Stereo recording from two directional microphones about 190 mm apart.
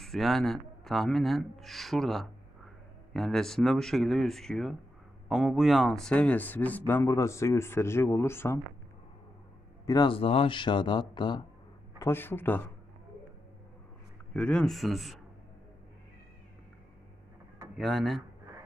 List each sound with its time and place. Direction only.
0.0 s speech: centre (ahead or behind)
9.8 s speech: 25° left (ahead or behind)
12.0 s speech: 10° left (ahead or behind)
14.3 s speech: 5° left (ahead or behind)
17.7 s speech: centre (ahead or behind)